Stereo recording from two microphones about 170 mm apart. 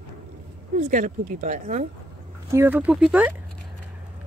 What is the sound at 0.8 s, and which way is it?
Speech, 50° right (ahead or behind).